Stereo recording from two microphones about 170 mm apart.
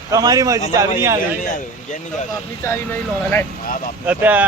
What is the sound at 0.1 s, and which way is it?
A man's voice, 20° right (ahead or behind).